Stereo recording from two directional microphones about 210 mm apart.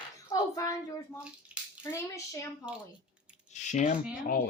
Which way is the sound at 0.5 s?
15° left (ahead or behind).